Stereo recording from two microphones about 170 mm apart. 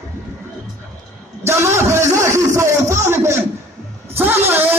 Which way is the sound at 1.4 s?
15° right (ahead or behind).